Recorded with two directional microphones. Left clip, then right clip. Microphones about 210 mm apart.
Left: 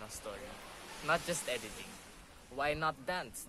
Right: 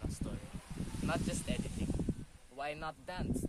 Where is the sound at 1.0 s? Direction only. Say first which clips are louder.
Left 5 dB; 5° right (ahead or behind).